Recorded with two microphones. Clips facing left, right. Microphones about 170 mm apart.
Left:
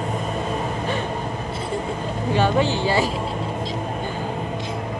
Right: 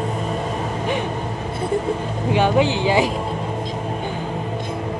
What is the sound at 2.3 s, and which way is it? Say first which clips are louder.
Vehicle: right 3 dB; 15° right (ahead or behind).